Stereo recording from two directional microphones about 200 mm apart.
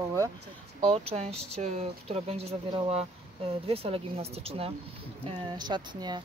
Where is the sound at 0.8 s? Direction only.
30° right (ahead or behind).